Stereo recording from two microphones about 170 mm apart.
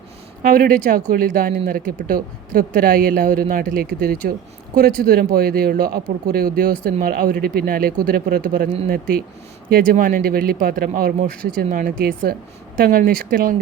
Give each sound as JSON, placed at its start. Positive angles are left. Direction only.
{"t": 0.4, "sound": "speech", "side_deg": -60}